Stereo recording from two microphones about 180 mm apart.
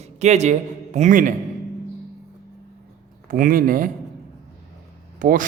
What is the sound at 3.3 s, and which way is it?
Speech, 50° right (ahead or behind).